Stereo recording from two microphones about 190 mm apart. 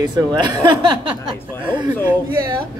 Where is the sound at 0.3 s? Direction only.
20° right (ahead or behind).